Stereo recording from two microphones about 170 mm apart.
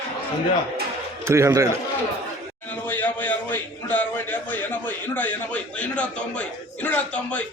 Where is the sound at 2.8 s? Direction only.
10° left (ahead or behind).